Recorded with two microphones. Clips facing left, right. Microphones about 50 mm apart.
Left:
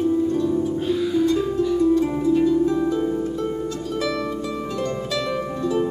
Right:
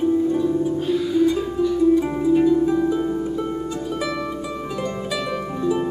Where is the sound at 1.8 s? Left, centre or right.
Centre.